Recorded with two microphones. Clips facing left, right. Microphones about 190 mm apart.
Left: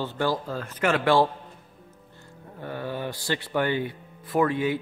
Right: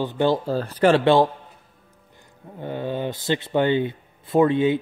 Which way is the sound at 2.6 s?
20° right (ahead or behind).